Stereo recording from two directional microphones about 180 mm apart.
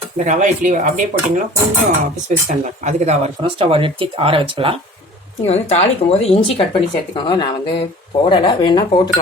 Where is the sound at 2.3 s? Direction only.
40° right (ahead or behind).